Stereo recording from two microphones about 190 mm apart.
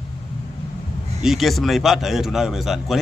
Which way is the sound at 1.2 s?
Centre (ahead or behind).